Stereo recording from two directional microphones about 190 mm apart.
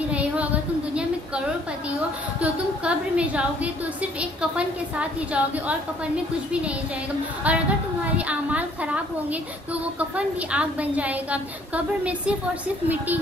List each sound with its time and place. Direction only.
0.1 s a sound: 5° right (ahead or behind)
2.4 s a woman's voice: 5° right (ahead or behind)
7.5 s a woman's voice: 5° right (ahead or behind)